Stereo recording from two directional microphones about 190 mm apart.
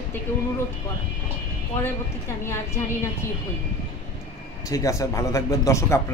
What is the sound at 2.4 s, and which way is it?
Speech, 15° left (ahead or behind).